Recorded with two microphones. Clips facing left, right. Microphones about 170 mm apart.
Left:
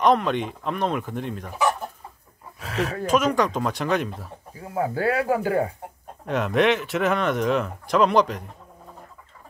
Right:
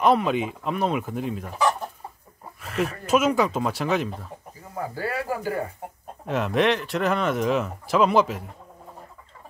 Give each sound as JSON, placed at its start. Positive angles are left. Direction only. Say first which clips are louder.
{"t": 0.0, "sound": "speech", "louder": "even", "side_deg": -5}
{"t": 2.6, "sound": "speech", "louder": "left 1 dB", "side_deg": 90}
{"t": 3.1, "sound": "speech", "louder": "right 1 dB", "side_deg": -5}
{"t": 4.7, "sound": "speech", "louder": "left 6 dB", "side_deg": 65}
{"t": 6.2, "sound": "speech", "louder": "left 1 dB", "side_deg": 0}